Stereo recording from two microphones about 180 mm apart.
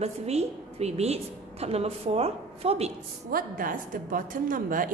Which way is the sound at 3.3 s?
50° right (ahead or behind).